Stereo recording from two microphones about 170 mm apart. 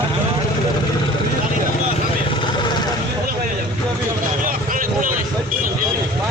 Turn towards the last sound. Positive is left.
turn(degrees=-55)  # may be behind; listen again after turning